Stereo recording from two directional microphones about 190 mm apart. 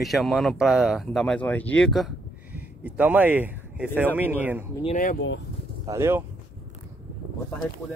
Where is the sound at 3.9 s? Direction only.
10° right (ahead or behind).